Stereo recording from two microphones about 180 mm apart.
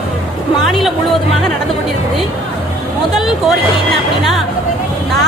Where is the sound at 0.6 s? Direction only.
Centre (ahead or behind).